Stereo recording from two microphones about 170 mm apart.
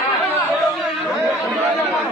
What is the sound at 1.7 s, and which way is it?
Chatter, centre (ahead or behind).